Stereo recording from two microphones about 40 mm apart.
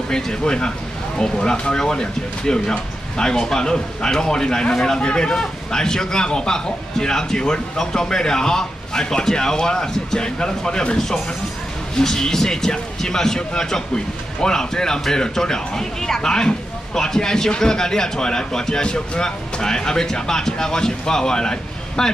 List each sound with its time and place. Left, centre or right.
0.1 s a man's voice: centre
12.0 s a man's voice: centre